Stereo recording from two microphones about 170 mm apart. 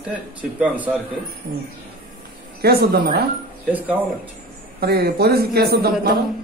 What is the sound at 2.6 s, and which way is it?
Speech, 65° right (ahead or behind).